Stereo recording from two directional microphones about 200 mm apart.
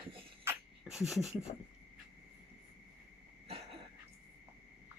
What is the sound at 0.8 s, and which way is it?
Speech, centre (ahead or behind).